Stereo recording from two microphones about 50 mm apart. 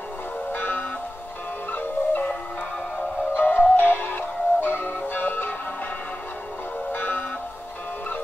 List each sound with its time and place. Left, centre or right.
0.5 s music: left
3.3 s music: left
6.9 s music: left